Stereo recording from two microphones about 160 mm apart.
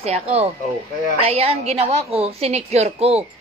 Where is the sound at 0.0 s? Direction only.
40° right (ahead or behind).